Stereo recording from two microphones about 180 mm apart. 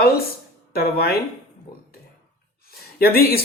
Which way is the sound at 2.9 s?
60° left (ahead or behind).